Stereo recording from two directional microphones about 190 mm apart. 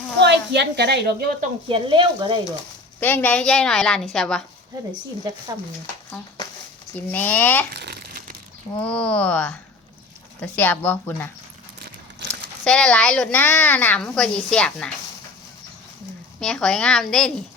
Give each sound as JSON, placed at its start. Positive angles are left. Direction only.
{"t": 0.2, "sound": "a woman's voice", "side_deg": -65}
{"t": 1.6, "sound": "speech", "side_deg": -25}
{"t": 3.0, "sound": "a woman's voice", "side_deg": 10}
{"t": 6.1, "sound": "speech", "side_deg": 20}
{"t": 7.7, "sound": "crumpling", "side_deg": -60}
{"t": 8.8, "sound": "speech", "side_deg": 5}
{"t": 12.6, "sound": "a woman's voice", "side_deg": 5}
{"t": 16.4, "sound": "a woman's voice", "side_deg": 5}